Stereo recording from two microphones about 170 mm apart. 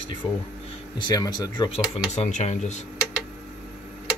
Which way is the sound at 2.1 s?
40° left (ahead or behind).